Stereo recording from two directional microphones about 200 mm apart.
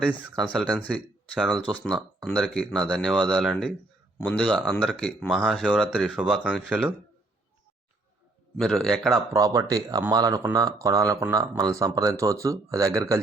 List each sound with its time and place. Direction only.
0.4 s speech: 5° left (ahead or behind)
8.5 s speech: centre (ahead or behind)
9.3 s speech: 20° right (ahead or behind)